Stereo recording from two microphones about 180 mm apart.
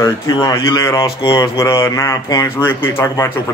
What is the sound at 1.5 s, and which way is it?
Speech, 15° left (ahead or behind).